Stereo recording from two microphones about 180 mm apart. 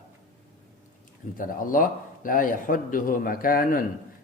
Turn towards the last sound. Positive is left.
turn(degrees=50)  # may be behind; listen again after turning